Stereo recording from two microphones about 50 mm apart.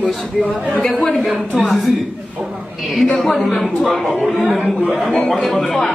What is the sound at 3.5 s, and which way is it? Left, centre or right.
A man's voice, centre.